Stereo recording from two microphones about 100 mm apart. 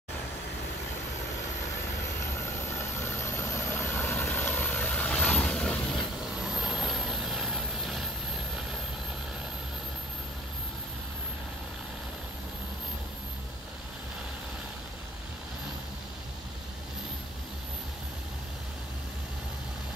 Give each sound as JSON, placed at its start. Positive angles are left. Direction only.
{"t": 2.8, "sound": "vehicle", "side_deg": 30}
{"t": 6.5, "sound": "vehicle", "side_deg": -5}